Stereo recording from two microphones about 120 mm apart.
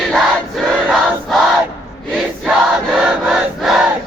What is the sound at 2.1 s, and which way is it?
Choir, 5° right (ahead or behind).